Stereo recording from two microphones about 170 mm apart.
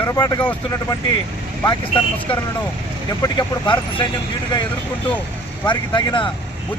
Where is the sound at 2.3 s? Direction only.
30° left (ahead or behind).